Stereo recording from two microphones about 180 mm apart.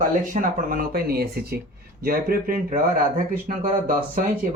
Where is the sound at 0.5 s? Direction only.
50° right (ahead or behind).